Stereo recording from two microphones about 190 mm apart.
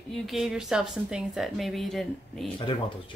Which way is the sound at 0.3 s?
Centre (ahead or behind).